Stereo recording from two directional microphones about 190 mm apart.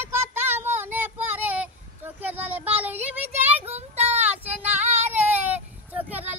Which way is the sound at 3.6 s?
35° right (ahead or behind).